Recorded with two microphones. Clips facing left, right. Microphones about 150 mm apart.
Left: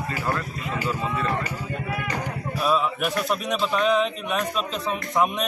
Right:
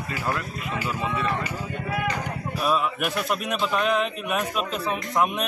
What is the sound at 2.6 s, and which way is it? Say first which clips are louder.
A man's voice: left 1 dB; 5° right (ahead or behind).